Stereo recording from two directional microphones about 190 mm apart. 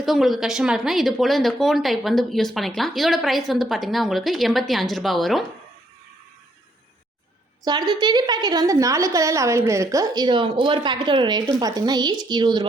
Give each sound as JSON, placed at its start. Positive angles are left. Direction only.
{"t": 0.0, "sound": "speech", "side_deg": 0}
{"t": 7.6, "sound": "a woman's voice", "side_deg": -20}